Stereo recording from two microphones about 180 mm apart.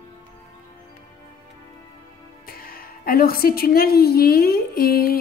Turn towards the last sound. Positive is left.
turn(degrees=55)  # may be behind; listen again after turning